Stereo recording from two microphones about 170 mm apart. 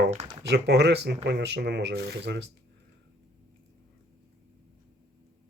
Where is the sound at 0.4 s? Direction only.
80° right.